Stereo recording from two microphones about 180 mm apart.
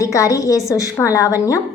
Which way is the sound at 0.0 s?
15° left (ahead or behind).